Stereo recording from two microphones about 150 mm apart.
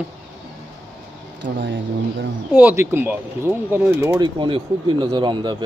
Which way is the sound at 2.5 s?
15° right (ahead or behind).